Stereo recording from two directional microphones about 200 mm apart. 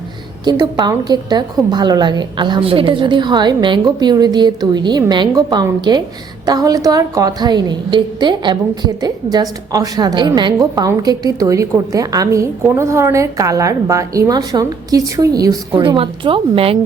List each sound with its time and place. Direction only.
0.4 s a woman's voice: 20° right (ahead or behind)